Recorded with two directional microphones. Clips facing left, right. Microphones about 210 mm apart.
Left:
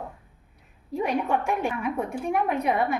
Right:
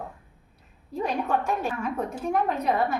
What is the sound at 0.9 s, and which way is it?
A woman's voice, 15° left (ahead or behind).